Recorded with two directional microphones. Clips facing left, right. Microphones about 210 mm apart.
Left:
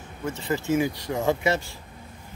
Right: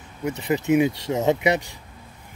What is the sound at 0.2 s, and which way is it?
Speech, 20° right (ahead or behind).